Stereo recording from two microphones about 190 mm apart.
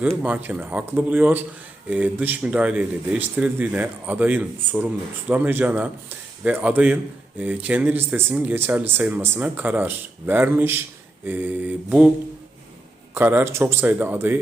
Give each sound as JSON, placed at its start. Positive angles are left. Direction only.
{"t": 0.0, "sound": "a man's voice", "side_deg": -5}
{"t": 13.1, "sound": "a man's voice", "side_deg": -10}